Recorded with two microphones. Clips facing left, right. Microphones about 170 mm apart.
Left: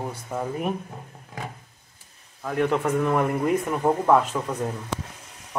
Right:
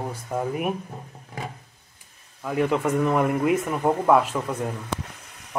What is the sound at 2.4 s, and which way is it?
Speech, 5° right (ahead or behind).